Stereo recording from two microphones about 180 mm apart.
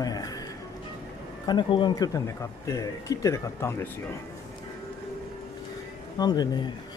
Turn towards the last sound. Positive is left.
turn(degrees=25)  # may be behind; listen again after turning